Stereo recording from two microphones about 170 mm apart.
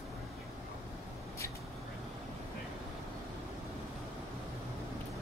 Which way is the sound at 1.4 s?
15° left (ahead or behind).